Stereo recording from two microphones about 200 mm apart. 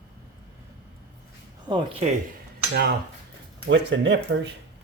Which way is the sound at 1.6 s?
25° right (ahead or behind).